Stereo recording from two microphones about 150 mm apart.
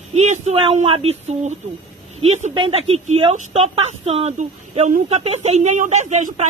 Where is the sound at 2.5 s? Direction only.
35° right (ahead or behind).